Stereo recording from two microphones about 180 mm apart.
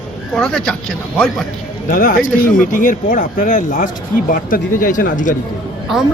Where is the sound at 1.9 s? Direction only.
50° left (ahead or behind).